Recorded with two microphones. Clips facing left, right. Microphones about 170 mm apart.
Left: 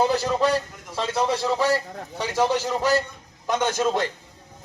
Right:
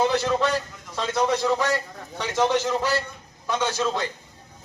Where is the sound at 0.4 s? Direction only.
10° left (ahead or behind).